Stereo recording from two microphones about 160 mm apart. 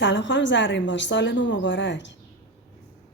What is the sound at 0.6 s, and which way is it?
A woman's voice, 90° left.